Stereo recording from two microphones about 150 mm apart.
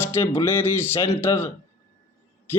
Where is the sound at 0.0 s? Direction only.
15° left (ahead or behind).